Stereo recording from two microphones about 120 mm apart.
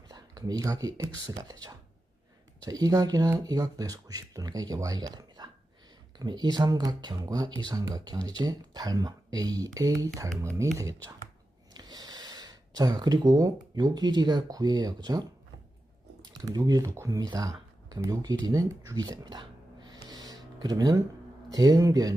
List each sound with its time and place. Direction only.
0.1 s speech: 30° right (ahead or behind)
16.3 s speech: 30° right (ahead or behind)